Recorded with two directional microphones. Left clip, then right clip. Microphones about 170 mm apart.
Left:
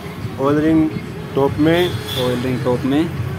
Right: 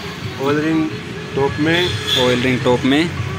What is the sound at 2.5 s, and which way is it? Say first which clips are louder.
Speech: right 4 dB; 10° right (ahead or behind).